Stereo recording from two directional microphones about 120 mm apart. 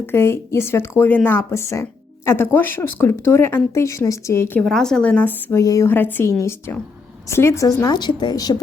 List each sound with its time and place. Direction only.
0.0 s speech: 20° left (ahead or behind)
4.6 s speech: 5° left (ahead or behind); by 5.9 s 30° left (ahead or behind)
5.9 s speech: 15° left (ahead or behind); by 8.6 s 30° left (ahead or behind)